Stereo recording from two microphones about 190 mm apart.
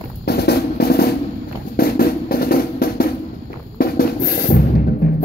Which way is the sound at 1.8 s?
50° left (ahead or behind).